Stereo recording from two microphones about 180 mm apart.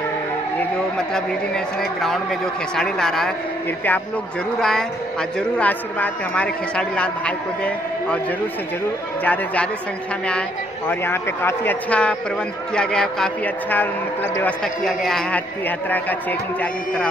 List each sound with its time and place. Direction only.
0.9 s a man's voice: 5° left (ahead or behind)
4.6 s a man's voice: 5° left (ahead or behind)
9.2 s a man's voice: 10° left (ahead or behind)
10.9 s a man's voice: 15° left (ahead or behind)
14.9 s a man's voice: 5° left (ahead or behind)